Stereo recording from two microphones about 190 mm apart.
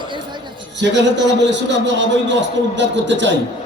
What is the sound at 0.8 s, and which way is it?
A man's voice, 70° right (ahead or behind).